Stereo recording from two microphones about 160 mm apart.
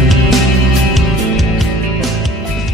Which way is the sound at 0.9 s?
Centre (ahead or behind).